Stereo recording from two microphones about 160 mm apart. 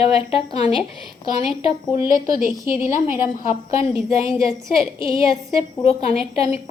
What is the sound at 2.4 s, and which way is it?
Speech, 60° right (ahead or behind).